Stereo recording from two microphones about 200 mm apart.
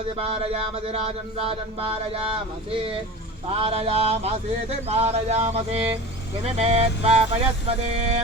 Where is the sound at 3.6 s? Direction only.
30° right (ahead or behind).